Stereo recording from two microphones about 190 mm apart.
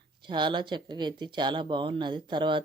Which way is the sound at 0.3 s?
25° right (ahead or behind).